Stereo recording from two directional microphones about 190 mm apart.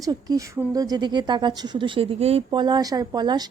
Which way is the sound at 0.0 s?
20° right (ahead or behind).